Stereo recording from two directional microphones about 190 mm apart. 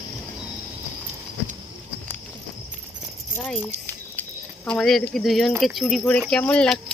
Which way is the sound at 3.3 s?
10° left (ahead or behind).